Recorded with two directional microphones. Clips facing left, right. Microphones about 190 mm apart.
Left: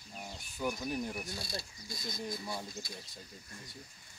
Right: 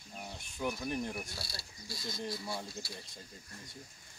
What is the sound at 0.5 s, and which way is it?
Speech, centre (ahead or behind).